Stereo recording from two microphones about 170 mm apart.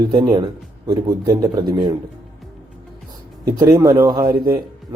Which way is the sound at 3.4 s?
20° right (ahead or behind).